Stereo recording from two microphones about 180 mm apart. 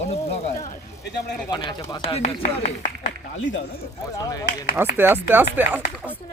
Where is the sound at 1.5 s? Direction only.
20° left (ahead or behind).